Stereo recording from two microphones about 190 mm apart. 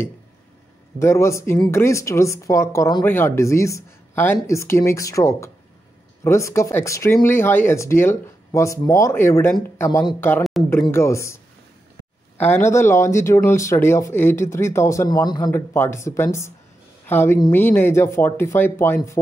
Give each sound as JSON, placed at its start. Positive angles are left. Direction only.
{"t": 0.9, "sound": "speech", "side_deg": 15}
{"t": 12.4, "sound": "speech", "side_deg": 10}